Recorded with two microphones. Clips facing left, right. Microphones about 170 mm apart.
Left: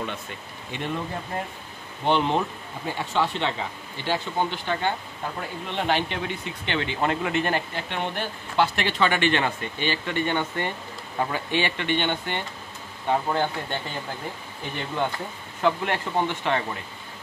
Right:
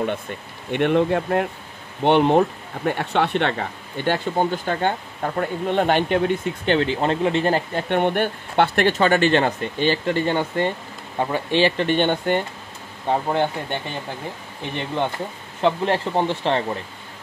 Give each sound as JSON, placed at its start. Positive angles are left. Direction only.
{"t": 0.7, "sound": "speech", "side_deg": -65}
{"t": 2.0, "sound": "speech", "side_deg": -55}
{"t": 7.7, "sound": "speech", "side_deg": -55}
{"t": 13.3, "sound": "speech", "side_deg": -20}